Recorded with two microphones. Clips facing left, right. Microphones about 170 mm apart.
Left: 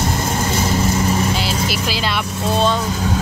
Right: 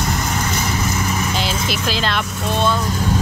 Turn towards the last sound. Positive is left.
turn(degrees=0)  # may be behind; listen again after turning